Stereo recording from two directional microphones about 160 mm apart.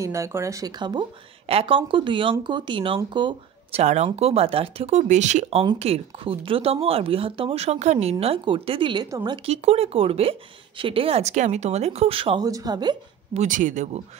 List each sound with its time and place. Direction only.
0.0 s speech: 20° right (ahead or behind)
3.8 s speech: 45° right (ahead or behind); by 9.4 s 25° right (ahead or behind)
9.5 s speech: 40° right (ahead or behind)
12.4 s speech: 25° right (ahead or behind)
13.3 s speech: 50° right (ahead or behind)